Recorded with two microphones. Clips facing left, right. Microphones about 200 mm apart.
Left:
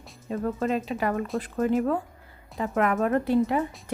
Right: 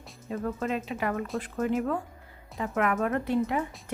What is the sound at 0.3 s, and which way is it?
Speech, 35° left (ahead or behind).